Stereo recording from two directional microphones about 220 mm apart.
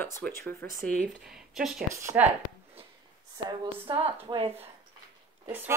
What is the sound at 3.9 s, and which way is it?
Speech, 25° right (ahead or behind).